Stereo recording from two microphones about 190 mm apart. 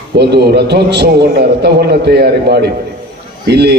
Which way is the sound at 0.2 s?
60° right (ahead or behind).